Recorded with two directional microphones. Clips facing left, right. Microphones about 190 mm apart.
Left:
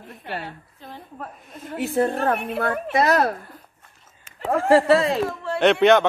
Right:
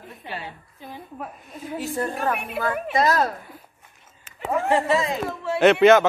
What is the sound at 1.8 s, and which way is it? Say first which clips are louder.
A woman's voice: left 6 dB; 65° left (ahead or behind).